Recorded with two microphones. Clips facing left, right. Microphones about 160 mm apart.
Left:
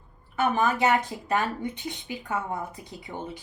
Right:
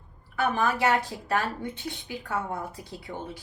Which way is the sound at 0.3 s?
20° left (ahead or behind).